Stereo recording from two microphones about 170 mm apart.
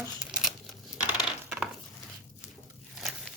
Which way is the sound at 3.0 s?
Centre (ahead or behind).